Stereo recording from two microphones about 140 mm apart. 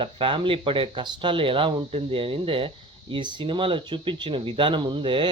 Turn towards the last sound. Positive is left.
turn(degrees=-35)  # may be behind; listen again after turning